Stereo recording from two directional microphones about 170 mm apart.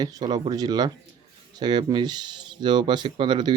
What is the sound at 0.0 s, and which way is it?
Speech, 25° right (ahead or behind).